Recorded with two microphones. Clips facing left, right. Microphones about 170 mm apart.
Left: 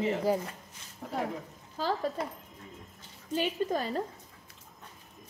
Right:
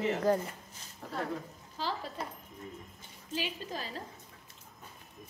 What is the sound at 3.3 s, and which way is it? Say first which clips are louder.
Speech: left 8 dB; 55° left (ahead or behind).